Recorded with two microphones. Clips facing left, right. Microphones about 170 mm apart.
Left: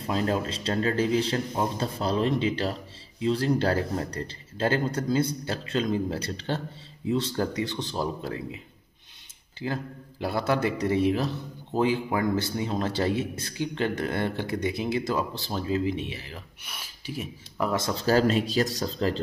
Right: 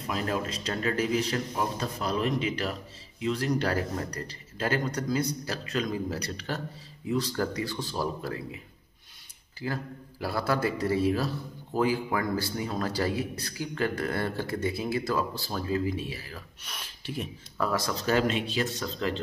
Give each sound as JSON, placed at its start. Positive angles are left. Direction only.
{"t": 0.0, "sound": "a man's voice", "side_deg": 30}
{"t": 9.6, "sound": "a man's voice", "side_deg": 20}
{"t": 16.6, "sound": "speech", "side_deg": 5}
{"t": 17.6, "sound": "a man's voice", "side_deg": 20}
{"t": 18.0, "sound": "speech", "side_deg": 35}